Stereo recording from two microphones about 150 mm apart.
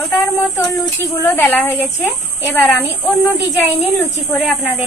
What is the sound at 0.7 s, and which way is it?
Speech, 20° left (ahead or behind).